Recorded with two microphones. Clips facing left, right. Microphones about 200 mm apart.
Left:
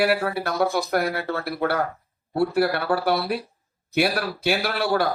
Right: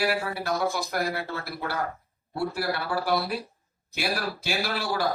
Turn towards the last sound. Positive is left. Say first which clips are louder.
# left 6 dB
turn(degrees=60)  # may be behind; listen again after turning